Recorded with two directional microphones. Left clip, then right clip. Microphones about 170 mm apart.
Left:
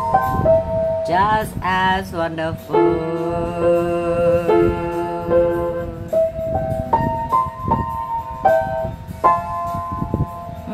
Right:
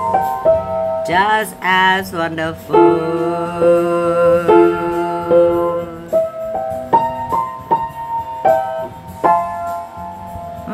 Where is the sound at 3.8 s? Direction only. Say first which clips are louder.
Right 4 dB; centre (ahead or behind).